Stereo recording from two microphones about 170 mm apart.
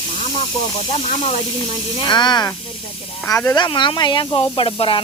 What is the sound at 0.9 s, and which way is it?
Speech, 40° left (ahead or behind).